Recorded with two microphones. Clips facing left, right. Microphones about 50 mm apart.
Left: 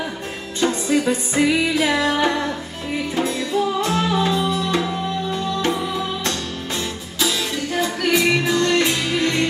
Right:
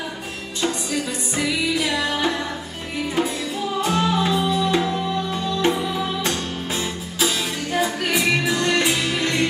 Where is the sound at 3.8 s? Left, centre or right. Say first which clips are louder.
Left 1 dB; centre.